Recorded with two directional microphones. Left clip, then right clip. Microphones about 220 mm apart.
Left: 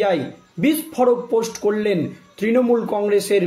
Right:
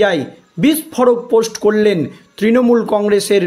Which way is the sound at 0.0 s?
45° right (ahead or behind).